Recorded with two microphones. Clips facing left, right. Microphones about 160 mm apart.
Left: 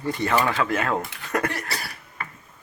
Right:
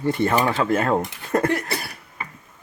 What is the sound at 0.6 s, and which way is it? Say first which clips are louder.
Speech: right 4 dB; 45° right (ahead or behind).